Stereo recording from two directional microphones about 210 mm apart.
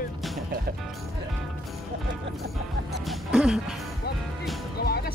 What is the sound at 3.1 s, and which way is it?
Music, 5° right (ahead or behind).